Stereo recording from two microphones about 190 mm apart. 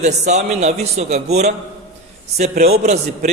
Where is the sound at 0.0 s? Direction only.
35° right (ahead or behind).